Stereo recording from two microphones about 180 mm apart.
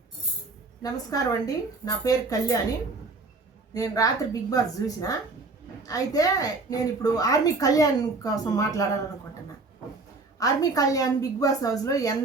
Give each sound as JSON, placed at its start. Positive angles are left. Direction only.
{"t": 0.8, "sound": "a woman's voice", "side_deg": 20}
{"t": 3.8, "sound": "a woman's voice", "side_deg": 20}
{"t": 10.4, "sound": "a woman's voice", "side_deg": 20}